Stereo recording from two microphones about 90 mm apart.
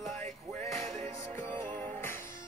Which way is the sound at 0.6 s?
Centre (ahead or behind).